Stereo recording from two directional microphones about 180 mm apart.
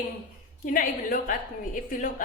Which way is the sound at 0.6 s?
50° left (ahead or behind).